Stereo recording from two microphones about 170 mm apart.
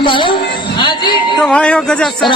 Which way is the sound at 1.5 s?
5° left (ahead or behind).